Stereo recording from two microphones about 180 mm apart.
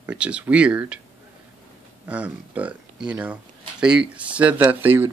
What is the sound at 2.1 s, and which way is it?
Speech, 10° right (ahead or behind).